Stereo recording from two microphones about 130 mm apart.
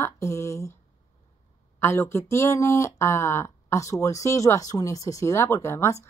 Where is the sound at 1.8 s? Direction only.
20° left (ahead or behind).